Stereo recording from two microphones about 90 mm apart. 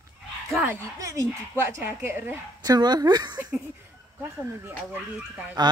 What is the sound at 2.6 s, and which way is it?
Speech, 50° right (ahead or behind).